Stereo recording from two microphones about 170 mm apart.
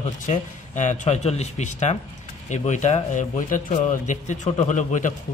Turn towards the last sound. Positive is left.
turn(degrees=45)  # may be behind; listen again after turning